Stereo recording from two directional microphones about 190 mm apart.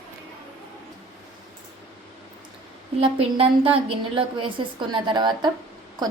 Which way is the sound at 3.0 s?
30° right (ahead or behind).